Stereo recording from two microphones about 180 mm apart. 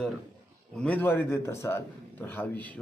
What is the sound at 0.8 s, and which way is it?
Speech, 10° left (ahead or behind).